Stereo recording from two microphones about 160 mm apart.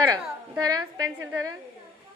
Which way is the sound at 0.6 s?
25° right (ahead or behind).